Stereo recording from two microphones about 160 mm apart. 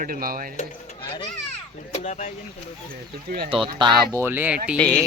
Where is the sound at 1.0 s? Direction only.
30° left (ahead or behind).